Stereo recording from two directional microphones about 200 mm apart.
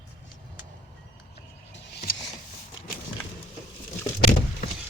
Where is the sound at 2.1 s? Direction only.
45° left (ahead or behind).